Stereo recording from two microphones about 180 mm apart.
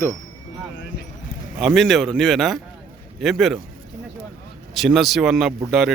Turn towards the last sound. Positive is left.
turn(degrees=0)  # may be behind; listen again after turning